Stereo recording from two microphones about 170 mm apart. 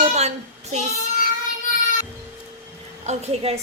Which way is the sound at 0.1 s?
40° right (ahead or behind).